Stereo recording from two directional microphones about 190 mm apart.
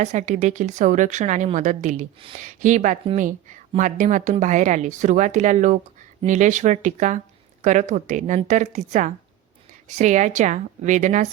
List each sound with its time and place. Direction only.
0.0 s a woman's voice: 40° right (ahead or behind)